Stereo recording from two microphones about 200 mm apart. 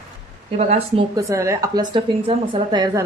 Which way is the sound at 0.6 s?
30° right (ahead or behind).